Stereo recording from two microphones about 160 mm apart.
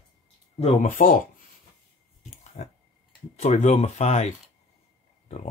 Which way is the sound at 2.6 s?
45° left (ahead or behind).